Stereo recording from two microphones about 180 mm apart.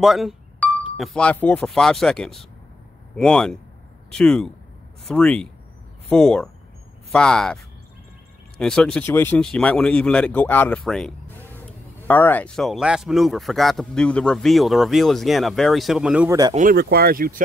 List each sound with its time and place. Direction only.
0.0 s speech: centre (ahead or behind)
16.3 s speech: 20° right (ahead or behind)
16.7 s speech: 60° right (ahead or behind)